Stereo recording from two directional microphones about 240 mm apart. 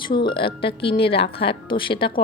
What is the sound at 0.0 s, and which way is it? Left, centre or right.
Speech, centre.